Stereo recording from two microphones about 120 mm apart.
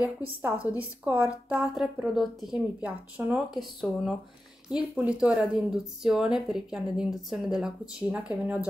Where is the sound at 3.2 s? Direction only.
15° right (ahead or behind).